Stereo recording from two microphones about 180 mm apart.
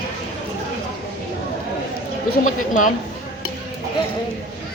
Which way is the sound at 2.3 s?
45° left (ahead or behind).